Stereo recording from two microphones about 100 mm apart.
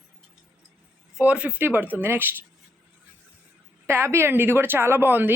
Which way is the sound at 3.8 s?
25° right (ahead or behind).